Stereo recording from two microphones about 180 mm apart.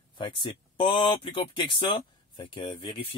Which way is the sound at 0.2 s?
25° left (ahead or behind).